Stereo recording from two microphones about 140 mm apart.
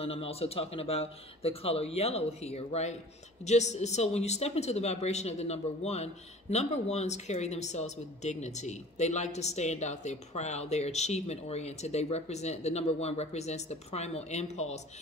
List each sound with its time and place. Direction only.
0.0 s a woman's voice: 45° left (ahead or behind)